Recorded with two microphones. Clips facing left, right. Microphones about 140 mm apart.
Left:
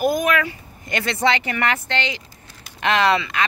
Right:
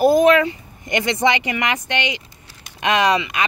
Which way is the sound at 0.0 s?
25° right (ahead or behind).